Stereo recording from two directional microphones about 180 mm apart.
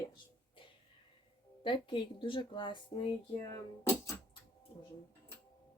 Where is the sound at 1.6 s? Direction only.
25° left (ahead or behind).